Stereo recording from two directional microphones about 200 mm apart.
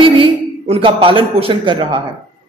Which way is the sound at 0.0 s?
25° right (ahead or behind).